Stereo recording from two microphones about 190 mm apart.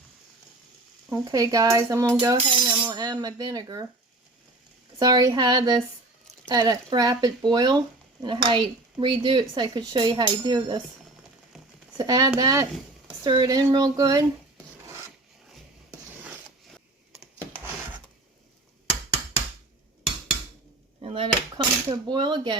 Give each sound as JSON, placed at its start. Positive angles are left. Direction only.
{"t": 1.1, "sound": "speech", "side_deg": -20}
{"t": 4.9, "sound": "speech", "side_deg": -20}
{"t": 11.9, "sound": "speech", "side_deg": -20}
{"t": 16.7, "sound": "a sound", "side_deg": -5}
{"t": 21.0, "sound": "cutlery", "side_deg": -30}